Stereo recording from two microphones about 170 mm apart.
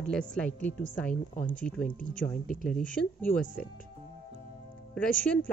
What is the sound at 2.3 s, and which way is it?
Speech, 50° left (ahead or behind).